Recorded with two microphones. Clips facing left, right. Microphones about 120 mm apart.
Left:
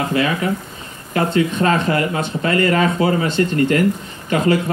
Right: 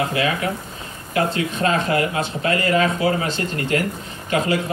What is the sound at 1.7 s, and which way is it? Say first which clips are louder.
Speech: left 2 dB; 45° left (ahead or behind).